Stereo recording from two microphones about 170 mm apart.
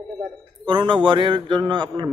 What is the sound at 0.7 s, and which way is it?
A man's voice, 30° right (ahead or behind).